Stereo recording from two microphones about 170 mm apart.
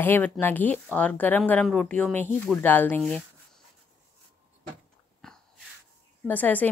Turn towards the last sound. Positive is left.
turn(degrees=10)  # may be behind; listen again after turning